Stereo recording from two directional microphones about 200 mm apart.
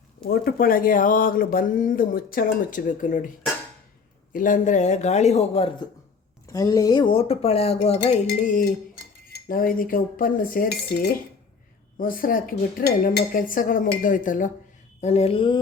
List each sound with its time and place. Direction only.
0.3 s speech: 50° left (ahead or behind)
4.3 s a man's voice: 40° left (ahead or behind)
6.5 s a man's voice: 15° left (ahead or behind)